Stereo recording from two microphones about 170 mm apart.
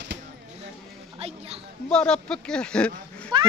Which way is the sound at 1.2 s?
35° right (ahead or behind).